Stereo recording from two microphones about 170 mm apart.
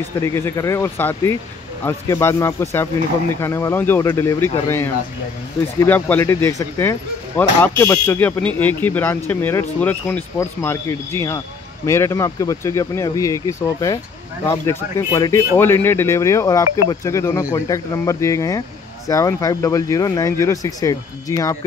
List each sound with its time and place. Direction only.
0.2 s speech: 15° left (ahead or behind)